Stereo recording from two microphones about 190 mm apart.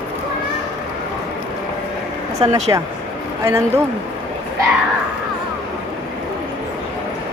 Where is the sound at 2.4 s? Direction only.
20° right (ahead or behind).